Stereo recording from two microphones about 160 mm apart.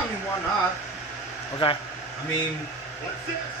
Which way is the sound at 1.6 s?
35° left (ahead or behind).